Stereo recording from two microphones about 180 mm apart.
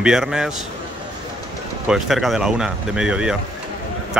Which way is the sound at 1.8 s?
Centre (ahead or behind).